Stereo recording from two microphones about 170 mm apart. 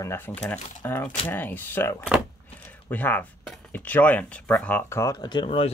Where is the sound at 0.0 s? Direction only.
15° left (ahead or behind).